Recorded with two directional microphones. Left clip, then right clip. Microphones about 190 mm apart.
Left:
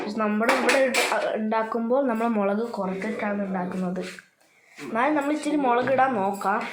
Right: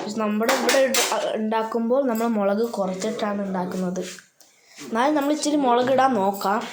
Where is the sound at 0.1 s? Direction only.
15° right (ahead or behind).